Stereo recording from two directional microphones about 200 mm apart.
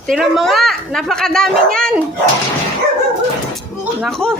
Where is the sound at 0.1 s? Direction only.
Centre (ahead or behind).